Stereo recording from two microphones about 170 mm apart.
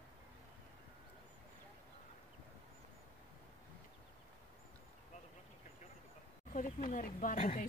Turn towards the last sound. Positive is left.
turn(degrees=55)  # may be behind; listen again after turning